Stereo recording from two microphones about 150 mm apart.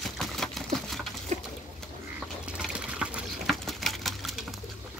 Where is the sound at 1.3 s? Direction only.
50° right (ahead or behind).